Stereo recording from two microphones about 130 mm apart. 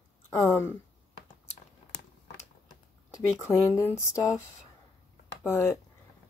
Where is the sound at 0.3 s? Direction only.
20° left (ahead or behind).